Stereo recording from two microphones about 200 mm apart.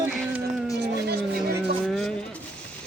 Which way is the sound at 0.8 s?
50° right (ahead or behind).